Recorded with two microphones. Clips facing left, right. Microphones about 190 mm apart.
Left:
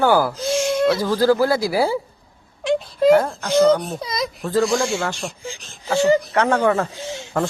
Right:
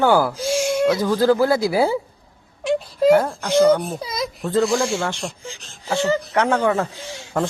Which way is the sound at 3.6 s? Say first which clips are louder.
Even; 10° right (ahead or behind).